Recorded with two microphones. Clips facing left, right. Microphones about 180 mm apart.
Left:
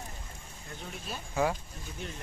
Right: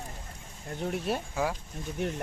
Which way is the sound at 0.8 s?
65° right (ahead or behind).